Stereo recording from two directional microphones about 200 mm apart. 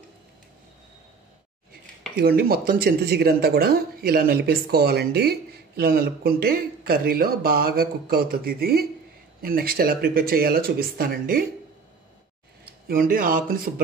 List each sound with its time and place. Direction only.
2.1 s speech: 50° right (ahead or behind)
12.8 s speech: 45° right (ahead or behind)